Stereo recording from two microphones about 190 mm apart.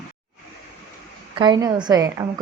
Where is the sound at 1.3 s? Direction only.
25° right (ahead or behind).